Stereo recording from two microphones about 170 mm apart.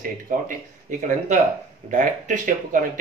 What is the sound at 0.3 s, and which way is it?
Speech, 50° right (ahead or behind).